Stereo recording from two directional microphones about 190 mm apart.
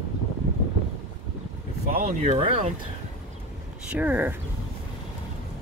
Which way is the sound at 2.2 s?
30° right (ahead or behind).